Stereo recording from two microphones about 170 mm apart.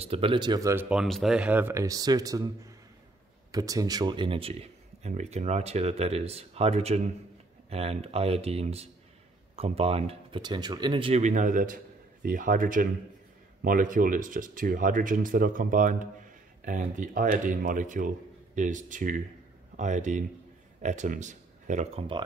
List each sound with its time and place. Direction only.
0.0 s speech: 35° right (ahead or behind)
0.8 s a man's voice: centre (ahead or behind); by 22.0 s 45° right (ahead or behind)